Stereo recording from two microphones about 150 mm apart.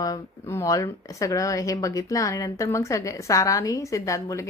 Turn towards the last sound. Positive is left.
turn(degrees=20)  # may be behind; listen again after turning